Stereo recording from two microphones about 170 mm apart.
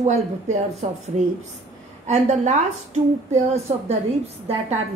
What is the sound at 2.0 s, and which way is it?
A woman's voice, 45° right (ahead or behind).